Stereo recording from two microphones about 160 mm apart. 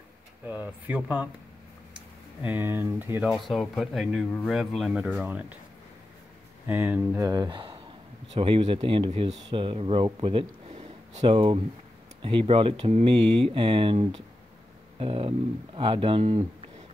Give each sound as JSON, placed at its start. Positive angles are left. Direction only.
{"t": 0.5, "sound": "speech", "side_deg": -10}
{"t": 2.4, "sound": "speech", "side_deg": -10}
{"t": 6.7, "sound": "speech", "side_deg": -10}
{"t": 10.7, "sound": "a sound", "side_deg": -45}
{"t": 11.3, "sound": "speech", "side_deg": -35}